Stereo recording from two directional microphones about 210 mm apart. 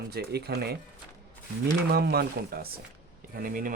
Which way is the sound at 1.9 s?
50° right (ahead or behind).